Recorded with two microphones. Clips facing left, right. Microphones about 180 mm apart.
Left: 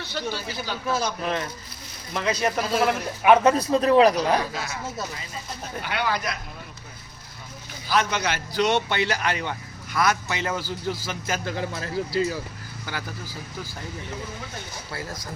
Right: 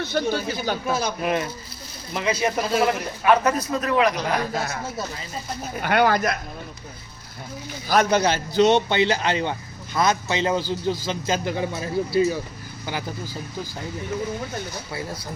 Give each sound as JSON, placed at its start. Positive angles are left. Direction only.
{"t": 0.0, "sound": "speech", "side_deg": -50}
{"t": 0.9, "sound": "a man's voice", "side_deg": -10}
{"t": 3.2, "sound": "a man's voice", "side_deg": 25}
{"t": 4.5, "sound": "speech", "side_deg": -50}
{"t": 5.8, "sound": "speech", "side_deg": -50}
{"t": 7.9, "sound": "a man's voice", "side_deg": -40}